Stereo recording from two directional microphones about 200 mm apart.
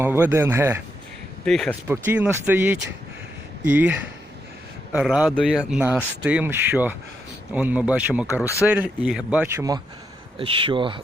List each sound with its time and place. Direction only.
0.0 s speech: 10° right (ahead or behind)
1.5 s speech: centre (ahead or behind)
1.9 s speech: 10° right (ahead or behind)
8.4 s speech: 15° left (ahead or behind)
8.6 s speech: 5° right (ahead or behind)
10.3 s speech: 25° right (ahead or behind)